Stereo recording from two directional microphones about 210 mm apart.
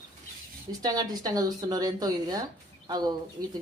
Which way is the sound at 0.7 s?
15° right (ahead or behind).